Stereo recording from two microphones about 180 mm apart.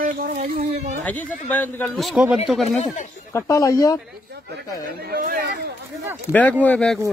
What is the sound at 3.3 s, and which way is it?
Speech, 15° left (ahead or behind).